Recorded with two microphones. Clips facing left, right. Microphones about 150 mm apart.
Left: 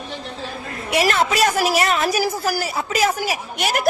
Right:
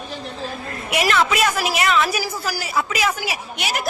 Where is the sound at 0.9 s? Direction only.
35° left (ahead or behind).